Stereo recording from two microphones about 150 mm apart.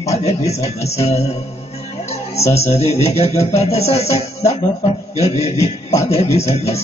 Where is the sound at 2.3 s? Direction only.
45° left (ahead or behind).